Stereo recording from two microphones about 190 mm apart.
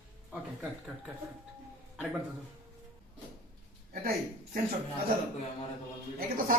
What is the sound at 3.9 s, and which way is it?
Speech, 50° right (ahead or behind).